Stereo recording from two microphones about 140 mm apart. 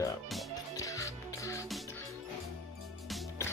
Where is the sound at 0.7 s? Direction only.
25° left (ahead or behind).